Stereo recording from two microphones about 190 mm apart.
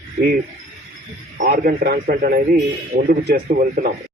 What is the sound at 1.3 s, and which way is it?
A man's voice, 50° right (ahead or behind).